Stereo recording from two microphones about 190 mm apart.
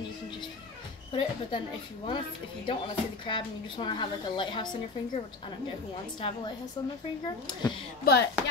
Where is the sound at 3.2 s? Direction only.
25° left (ahead or behind).